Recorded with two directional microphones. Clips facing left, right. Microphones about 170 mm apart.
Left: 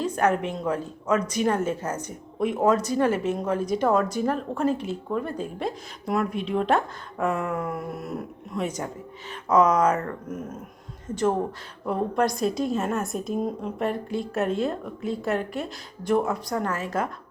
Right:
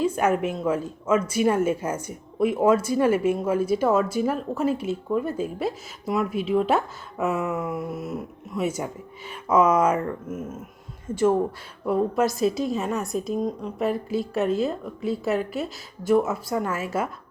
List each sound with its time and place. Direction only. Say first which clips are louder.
0.0 s a woman's voice: right 1 dB; 10° right (ahead or behind)